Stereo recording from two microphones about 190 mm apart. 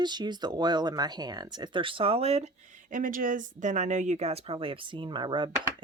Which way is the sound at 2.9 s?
45° right (ahead or behind).